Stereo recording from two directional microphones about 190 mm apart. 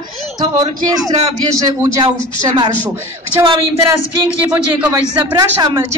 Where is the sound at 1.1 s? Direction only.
25° right (ahead or behind).